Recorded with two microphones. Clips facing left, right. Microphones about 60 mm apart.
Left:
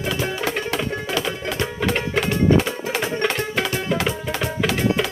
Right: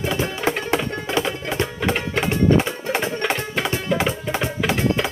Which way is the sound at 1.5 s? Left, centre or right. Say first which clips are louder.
Right 1 dB; right.